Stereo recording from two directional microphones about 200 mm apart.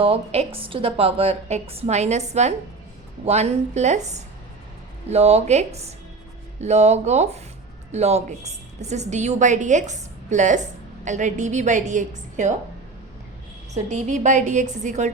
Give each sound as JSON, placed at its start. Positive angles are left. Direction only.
{"t": 0.0, "sound": "a woman's voice", "side_deg": -30}
{"t": 13.7, "sound": "a woman's voice", "side_deg": -35}